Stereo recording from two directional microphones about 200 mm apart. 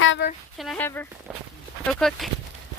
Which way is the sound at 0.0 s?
60° left (ahead or behind).